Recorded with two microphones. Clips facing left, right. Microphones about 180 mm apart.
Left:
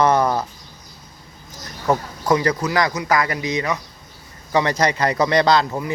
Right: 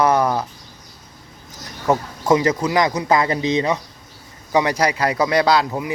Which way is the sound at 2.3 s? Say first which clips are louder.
Right 2 dB; 20° right (ahead or behind).